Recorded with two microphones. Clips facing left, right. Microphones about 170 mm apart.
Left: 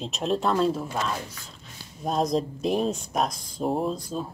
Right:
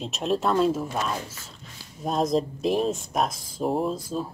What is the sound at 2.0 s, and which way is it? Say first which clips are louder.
Speech: right 1 dB; centre (ahead or behind).